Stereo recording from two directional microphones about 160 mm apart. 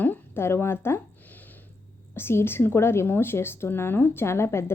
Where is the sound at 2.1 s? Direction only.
15° left (ahead or behind).